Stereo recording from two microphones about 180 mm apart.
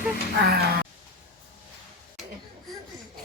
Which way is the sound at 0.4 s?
60° right (ahead or behind).